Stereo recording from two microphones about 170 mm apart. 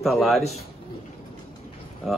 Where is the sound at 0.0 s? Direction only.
Centre (ahead or behind).